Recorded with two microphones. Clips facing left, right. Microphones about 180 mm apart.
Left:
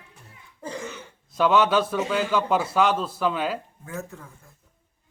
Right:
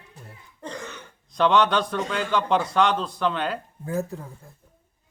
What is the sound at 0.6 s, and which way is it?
Throat clearing, 5° left (ahead or behind).